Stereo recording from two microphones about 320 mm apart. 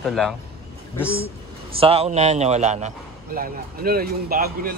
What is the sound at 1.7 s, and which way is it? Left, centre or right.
A man's voice, centre.